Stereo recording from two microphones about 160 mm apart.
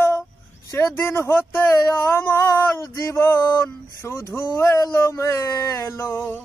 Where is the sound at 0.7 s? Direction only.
15° left (ahead or behind).